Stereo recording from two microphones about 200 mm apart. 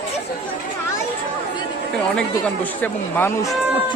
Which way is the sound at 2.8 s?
10° left (ahead or behind).